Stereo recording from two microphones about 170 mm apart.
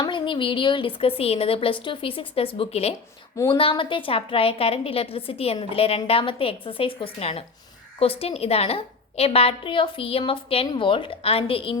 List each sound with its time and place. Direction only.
0.0 s a woman's voice: 30° left (ahead or behind)
3.3 s a woman's voice: 20° left (ahead or behind)
3.6 s a woman's voice: 30° left (ahead or behind)